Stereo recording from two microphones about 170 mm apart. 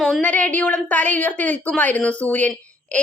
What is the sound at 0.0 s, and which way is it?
A woman's voice, 5° left (ahead or behind).